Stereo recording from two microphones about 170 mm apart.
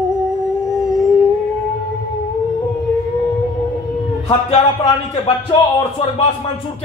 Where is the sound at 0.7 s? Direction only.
5° right (ahead or behind).